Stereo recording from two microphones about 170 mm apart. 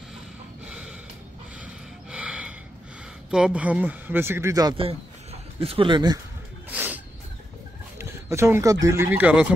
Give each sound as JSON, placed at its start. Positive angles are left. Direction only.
{"t": 0.7, "sound": "snort", "side_deg": -5}
{"t": 2.0, "sound": "gasp", "side_deg": -5}
{"t": 3.3, "sound": "speech", "side_deg": -5}
{"t": 4.7, "sound": "speech", "side_deg": -35}
{"t": 6.7, "sound": "a sound", "side_deg": -10}
{"t": 8.0, "sound": "speech", "side_deg": -15}